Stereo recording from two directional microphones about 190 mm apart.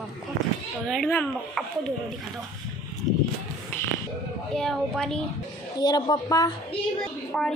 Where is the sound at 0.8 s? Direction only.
Centre (ahead or behind).